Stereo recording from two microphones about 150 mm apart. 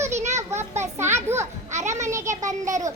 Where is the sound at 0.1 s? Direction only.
50° right (ahead or behind).